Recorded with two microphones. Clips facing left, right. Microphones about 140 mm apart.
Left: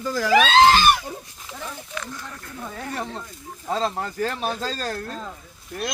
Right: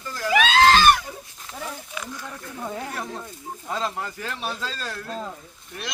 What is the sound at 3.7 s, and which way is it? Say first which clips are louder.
Speech: left 4 dB; 35° left (ahead or behind).